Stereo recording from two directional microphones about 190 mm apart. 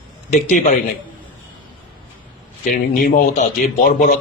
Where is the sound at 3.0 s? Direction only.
40° left (ahead or behind).